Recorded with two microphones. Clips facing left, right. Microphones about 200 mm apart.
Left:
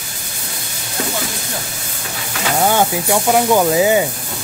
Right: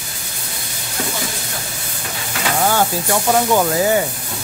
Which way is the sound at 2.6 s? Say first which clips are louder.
Left 3 dB; 15° left (ahead or behind).